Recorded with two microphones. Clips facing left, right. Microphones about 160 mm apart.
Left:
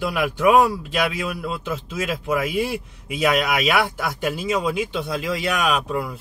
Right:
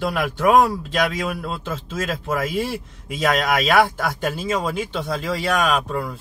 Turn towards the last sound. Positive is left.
turn(degrees=-45)  # may be behind; listen again after turning